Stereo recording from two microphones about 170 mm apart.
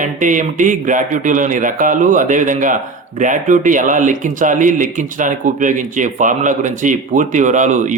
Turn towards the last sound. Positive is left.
turn(degrees=-45)  # may be behind; listen again after turning